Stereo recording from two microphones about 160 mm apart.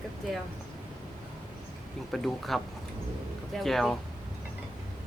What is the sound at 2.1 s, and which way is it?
Speech, centre (ahead or behind).